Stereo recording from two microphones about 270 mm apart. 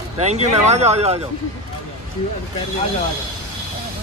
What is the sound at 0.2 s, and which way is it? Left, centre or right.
Speech, right.